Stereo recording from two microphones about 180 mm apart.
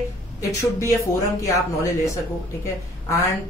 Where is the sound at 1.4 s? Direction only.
15° left (ahead or behind).